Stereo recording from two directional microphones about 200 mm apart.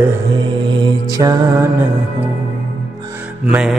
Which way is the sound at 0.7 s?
20° right (ahead or behind).